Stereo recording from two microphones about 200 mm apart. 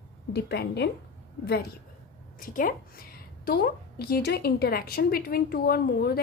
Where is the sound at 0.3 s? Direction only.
55° left (ahead or behind).